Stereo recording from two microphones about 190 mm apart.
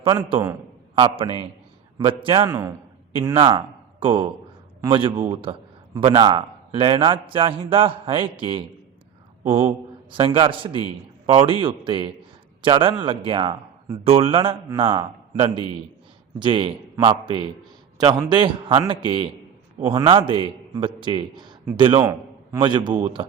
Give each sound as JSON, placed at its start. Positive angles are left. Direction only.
{"t": 0.0, "sound": "a man's voice", "side_deg": -20}
{"t": 9.4, "sound": "speech", "side_deg": -15}
{"t": 9.6, "sound": "a man's voice", "side_deg": -25}